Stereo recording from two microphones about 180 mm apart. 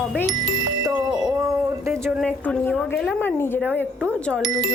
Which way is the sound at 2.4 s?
5° left (ahead or behind).